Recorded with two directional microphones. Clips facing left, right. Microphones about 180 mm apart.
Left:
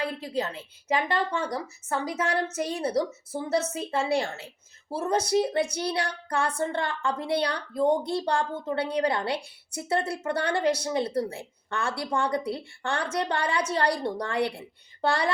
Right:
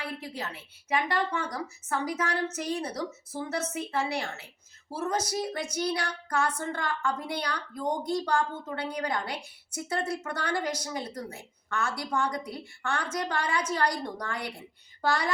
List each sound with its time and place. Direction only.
0.3 s a woman's voice: 30° left (ahead or behind)